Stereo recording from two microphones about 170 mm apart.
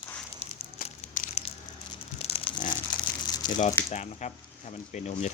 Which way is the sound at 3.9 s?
45° left (ahead or behind).